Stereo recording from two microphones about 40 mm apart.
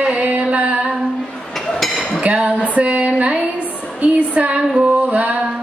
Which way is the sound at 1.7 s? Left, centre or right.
Centre.